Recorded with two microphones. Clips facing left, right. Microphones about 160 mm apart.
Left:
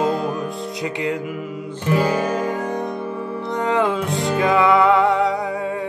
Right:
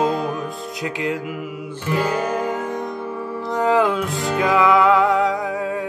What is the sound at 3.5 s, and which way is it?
Music, 5° right (ahead or behind).